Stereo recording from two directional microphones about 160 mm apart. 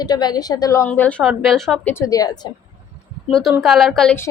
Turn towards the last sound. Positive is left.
turn(degrees=0)  # may be behind; listen again after turning